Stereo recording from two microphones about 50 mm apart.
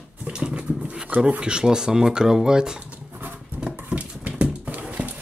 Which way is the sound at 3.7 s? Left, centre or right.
Right.